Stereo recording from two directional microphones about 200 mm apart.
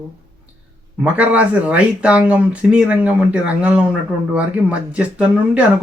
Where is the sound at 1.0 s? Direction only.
5° right (ahead or behind).